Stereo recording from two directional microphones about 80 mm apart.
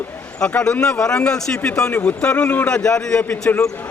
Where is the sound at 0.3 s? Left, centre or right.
Centre.